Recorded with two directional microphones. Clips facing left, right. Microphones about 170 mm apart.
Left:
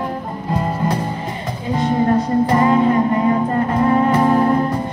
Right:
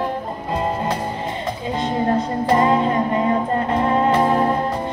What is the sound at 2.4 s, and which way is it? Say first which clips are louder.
Music: right 2 dB; 25° right (ahead or behind).